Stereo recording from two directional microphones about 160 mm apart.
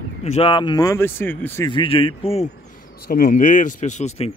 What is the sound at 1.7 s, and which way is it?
Speech, 35° left (ahead or behind).